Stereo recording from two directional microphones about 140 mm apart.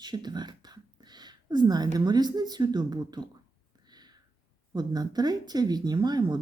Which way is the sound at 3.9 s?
30° right (ahead or behind).